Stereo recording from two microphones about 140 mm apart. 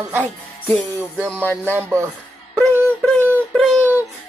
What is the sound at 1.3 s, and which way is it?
Speech, 10° left (ahead or behind).